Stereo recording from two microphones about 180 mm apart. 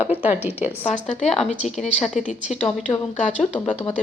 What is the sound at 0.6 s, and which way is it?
Speech, 40° left (ahead or behind).